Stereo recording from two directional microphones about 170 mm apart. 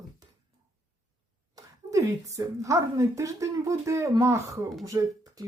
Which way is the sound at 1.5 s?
20° right (ahead or behind).